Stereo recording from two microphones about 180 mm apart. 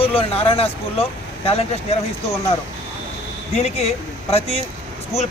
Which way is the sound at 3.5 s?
35° left (ahead or behind).